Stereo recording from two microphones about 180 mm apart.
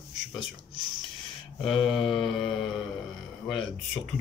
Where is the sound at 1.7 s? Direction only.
30° left (ahead or behind).